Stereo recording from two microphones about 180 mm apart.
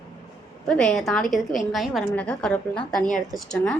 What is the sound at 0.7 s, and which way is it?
A woman's voice, 5° left (ahead or behind).